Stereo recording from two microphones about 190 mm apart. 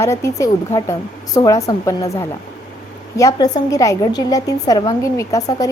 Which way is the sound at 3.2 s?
20° left (ahead or behind).